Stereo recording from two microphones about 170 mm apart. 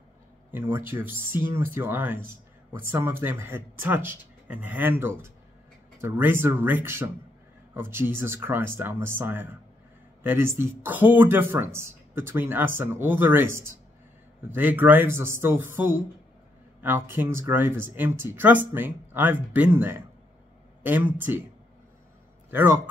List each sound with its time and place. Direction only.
0.5 s speech: 10° right (ahead or behind)
22.5 s speech: 10° right (ahead or behind)